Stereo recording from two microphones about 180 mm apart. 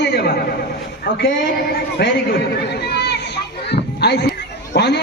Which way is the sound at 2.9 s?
65° left (ahead or behind).